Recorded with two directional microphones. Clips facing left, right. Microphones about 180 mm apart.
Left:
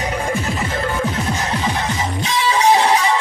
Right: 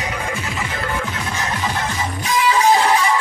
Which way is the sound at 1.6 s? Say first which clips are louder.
Left 2 dB; 20° left (ahead or behind).